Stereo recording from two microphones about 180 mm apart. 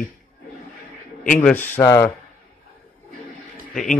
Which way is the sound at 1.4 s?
10° left (ahead or behind).